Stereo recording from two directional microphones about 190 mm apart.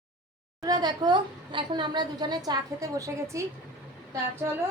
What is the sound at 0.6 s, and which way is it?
A woman's voice, 20° right (ahead or behind).